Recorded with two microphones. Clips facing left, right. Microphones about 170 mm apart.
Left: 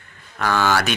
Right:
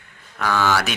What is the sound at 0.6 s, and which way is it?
Speech, centre (ahead or behind).